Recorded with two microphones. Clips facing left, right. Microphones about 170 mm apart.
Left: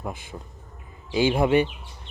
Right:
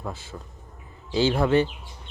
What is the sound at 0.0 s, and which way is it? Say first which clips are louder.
Speech: left 1 dB; 15° left (ahead or behind).